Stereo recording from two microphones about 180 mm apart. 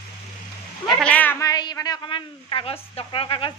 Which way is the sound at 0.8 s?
5° left (ahead or behind).